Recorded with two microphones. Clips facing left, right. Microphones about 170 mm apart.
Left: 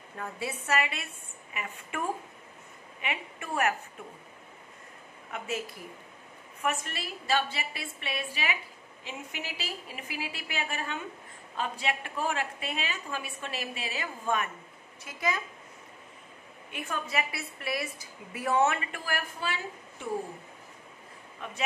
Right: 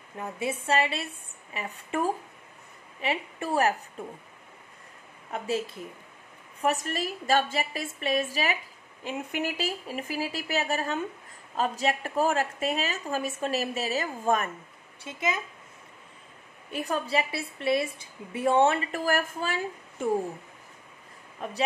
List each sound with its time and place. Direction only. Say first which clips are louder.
0.2 s a woman's voice: right 5 dB; 25° right (ahead or behind)
5.3 s a woman's voice: right 4 dB; 35° right (ahead or behind)
6.6 s a woman's voice: right 5 dB; 40° right (ahead or behind)
9.0 s a woman's voice: right 9 dB; 50° right (ahead or behind)
15.0 s a woman's voice: right 2 dB; 20° right (ahead or behind)
16.7 s a woman's voice: right 5 dB; 35° right (ahead or behind)
21.4 s a woman's voice: right 6 dB; 40° right (ahead or behind)